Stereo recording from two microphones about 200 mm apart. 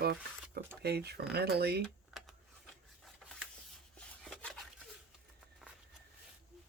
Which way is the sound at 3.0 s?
Centre (ahead or behind).